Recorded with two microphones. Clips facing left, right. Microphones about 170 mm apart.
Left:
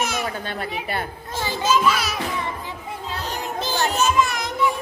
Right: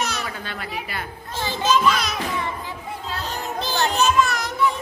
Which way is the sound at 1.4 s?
10° left (ahead or behind).